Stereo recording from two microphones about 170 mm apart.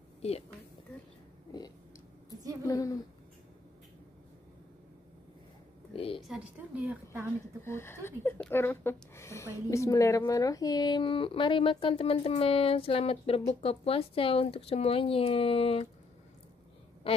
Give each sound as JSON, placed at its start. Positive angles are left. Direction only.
{"t": 0.2, "sound": "a woman's voice", "side_deg": 40}
{"t": 2.6, "sound": "a woman's voice", "side_deg": 20}
{"t": 5.9, "sound": "a sound", "side_deg": 35}
{"t": 6.2, "sound": "a woman's voice", "side_deg": -5}
{"t": 7.6, "sound": "speech", "side_deg": 15}
{"t": 17.0, "sound": "a sound", "side_deg": 35}